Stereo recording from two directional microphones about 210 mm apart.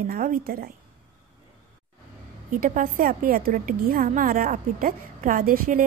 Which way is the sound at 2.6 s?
40° right (ahead or behind).